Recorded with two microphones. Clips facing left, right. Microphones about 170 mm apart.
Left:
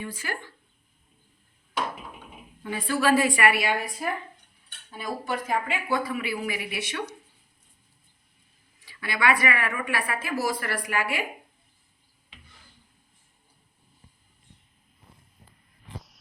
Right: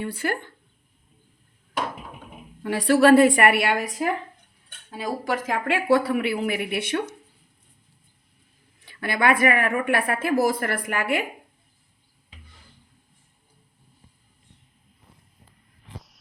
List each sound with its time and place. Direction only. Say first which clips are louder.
0.0 s speech: right 7 dB; 60° right (ahead or behind)
2.6 s a woman's voice: right 8 dB; 75° right (ahead or behind); by 7.1 s 55° right (ahead or behind)
8.8 s a woman's voice: right 4 dB; 55° right (ahead or behind)
16.0 s a sound: even; centre (ahead or behind)